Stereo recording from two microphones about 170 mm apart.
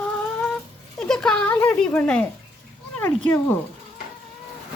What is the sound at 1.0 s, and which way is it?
Speech, 5° left (ahead or behind).